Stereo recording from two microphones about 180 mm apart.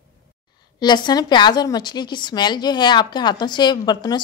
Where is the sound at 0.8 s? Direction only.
25° left (ahead or behind).